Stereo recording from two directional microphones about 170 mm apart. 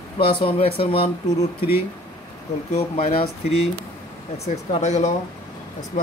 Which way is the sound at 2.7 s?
40° left (ahead or behind).